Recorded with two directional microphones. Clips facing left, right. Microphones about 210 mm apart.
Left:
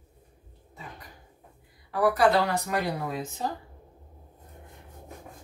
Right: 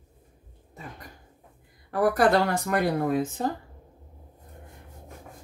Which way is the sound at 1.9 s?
50° right (ahead or behind).